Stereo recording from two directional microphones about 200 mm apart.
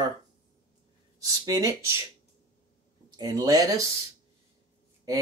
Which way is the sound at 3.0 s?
20° right (ahead or behind).